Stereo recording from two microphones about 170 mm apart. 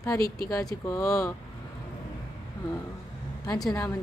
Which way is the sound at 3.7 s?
20° left (ahead or behind).